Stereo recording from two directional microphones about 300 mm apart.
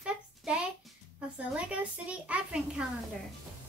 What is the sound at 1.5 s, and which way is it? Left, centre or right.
A child's voice, centre.